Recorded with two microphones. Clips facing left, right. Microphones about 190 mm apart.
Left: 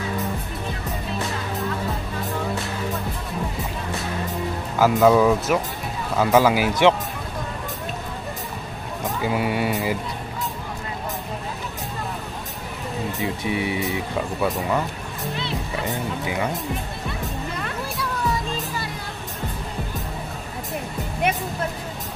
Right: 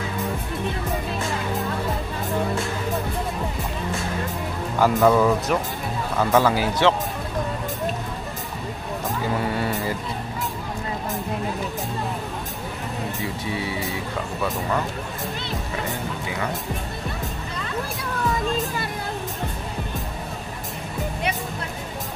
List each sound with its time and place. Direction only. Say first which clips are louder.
4.7 s speech: left 2 dB; 5° left (ahead or behind)
9.3 s speech: left 2 dB; 10° left (ahead or behind)
13.2 s speech: left 6 dB; 20° left (ahead or behind)